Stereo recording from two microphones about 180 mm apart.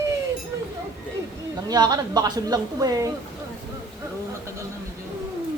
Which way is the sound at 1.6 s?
20° right (ahead or behind).